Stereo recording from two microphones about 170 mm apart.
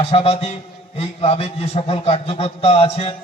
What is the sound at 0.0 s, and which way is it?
A man's voice, 35° left (ahead or behind).